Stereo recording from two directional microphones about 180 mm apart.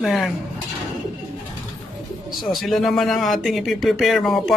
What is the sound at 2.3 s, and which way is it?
Speech, centre (ahead or behind).